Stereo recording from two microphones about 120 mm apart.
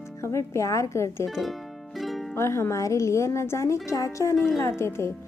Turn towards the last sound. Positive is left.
turn(degrees=20)  # may be behind; listen again after turning